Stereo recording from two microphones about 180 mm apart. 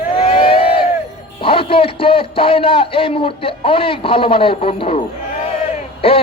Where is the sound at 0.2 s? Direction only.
30° left (ahead or behind).